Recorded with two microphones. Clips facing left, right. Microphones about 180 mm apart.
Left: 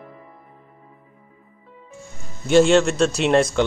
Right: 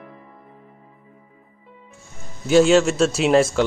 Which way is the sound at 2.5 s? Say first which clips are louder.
Even; 5° right (ahead or behind).